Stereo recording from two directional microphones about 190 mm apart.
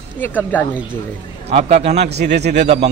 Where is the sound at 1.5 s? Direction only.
30° right (ahead or behind).